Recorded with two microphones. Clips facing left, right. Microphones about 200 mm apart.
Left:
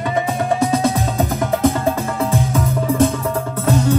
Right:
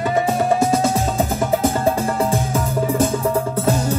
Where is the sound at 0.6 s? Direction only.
30° right (ahead or behind).